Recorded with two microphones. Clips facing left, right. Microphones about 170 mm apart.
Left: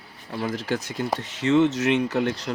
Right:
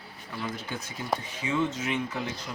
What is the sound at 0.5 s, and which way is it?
Speech, 85° left.